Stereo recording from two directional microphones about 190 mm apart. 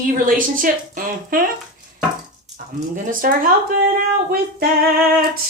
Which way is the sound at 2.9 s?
45° right (ahead or behind).